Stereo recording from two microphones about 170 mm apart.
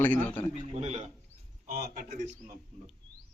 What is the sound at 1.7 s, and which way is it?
Speech, 45° right (ahead or behind).